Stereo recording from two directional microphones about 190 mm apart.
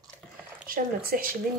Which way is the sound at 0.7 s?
50° right (ahead or behind).